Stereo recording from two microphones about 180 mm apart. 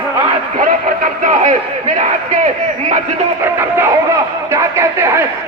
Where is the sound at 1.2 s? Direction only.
40° right (ahead or behind).